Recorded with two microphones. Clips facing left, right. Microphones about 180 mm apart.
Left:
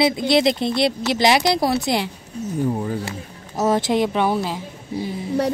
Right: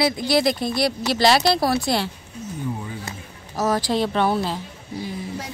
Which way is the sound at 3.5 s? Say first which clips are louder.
Left 3 dB; 20° left (ahead or behind).